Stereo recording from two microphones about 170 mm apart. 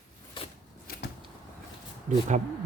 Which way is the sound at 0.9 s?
60° left (ahead or behind).